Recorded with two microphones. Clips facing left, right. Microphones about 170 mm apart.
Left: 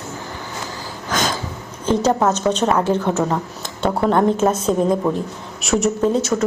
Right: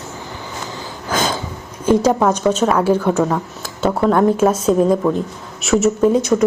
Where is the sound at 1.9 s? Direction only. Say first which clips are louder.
Right 3 dB; 10° right (ahead or behind).